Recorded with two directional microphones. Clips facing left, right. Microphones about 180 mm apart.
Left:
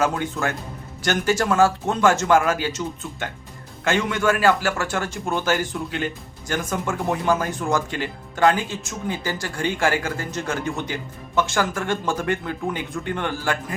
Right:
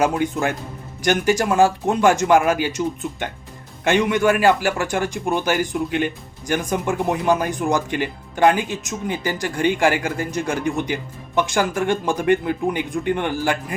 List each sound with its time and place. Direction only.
0.0 s speech: 15° right (ahead or behind)